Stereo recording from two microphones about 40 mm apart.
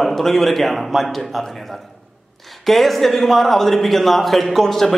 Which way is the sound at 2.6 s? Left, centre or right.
Centre.